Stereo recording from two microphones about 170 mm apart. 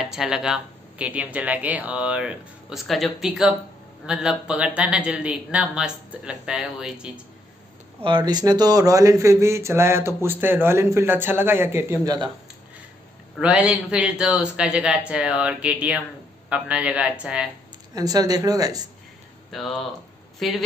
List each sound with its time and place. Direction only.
0.0 s speech: 5° right (ahead or behind)
8.0 s speech: 25° right (ahead or behind)
13.4 s speech: 5° right (ahead or behind)
17.9 s speech: 20° right (ahead or behind)
19.5 s speech: centre (ahead or behind)